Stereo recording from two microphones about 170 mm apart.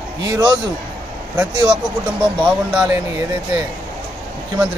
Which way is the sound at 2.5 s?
5° right (ahead or behind).